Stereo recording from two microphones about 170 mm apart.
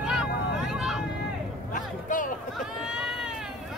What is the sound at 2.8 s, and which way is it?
Run, 5° right (ahead or behind).